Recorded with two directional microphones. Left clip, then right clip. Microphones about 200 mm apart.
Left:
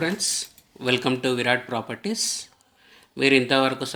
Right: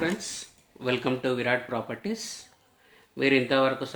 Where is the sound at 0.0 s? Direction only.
40° left (ahead or behind).